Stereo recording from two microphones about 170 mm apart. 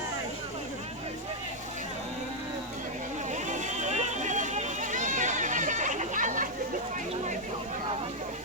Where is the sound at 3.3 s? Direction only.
45° right (ahead or behind).